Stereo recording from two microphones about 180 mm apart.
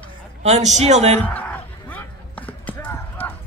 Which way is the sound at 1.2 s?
10° left (ahead or behind).